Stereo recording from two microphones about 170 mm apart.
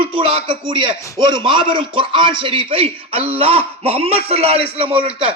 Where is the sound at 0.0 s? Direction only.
30° right (ahead or behind).